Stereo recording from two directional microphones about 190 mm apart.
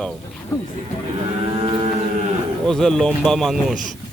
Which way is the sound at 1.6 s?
20° right (ahead or behind).